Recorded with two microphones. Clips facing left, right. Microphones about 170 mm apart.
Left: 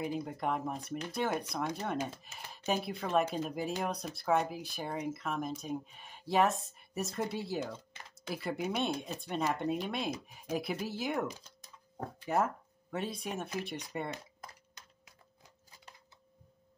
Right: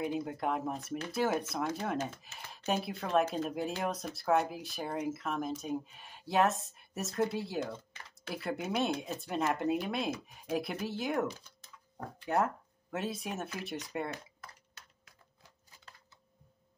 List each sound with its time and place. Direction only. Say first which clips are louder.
0.0 s speech: right 1 dB; centre (ahead or behind)
12.3 s speech: right 1 dB; centre (ahead or behind)
14.4 s a sound: left 2 dB; 15° left (ahead or behind)